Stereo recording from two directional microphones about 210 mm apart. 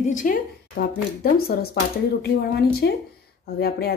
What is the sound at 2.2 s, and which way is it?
A woman's voice, 50° left (ahead or behind).